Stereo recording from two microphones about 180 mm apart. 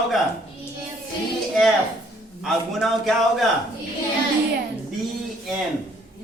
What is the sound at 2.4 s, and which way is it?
A man's voice, centre (ahead or behind).